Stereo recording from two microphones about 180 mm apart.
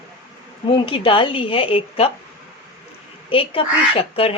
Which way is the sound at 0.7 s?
30° left (ahead or behind).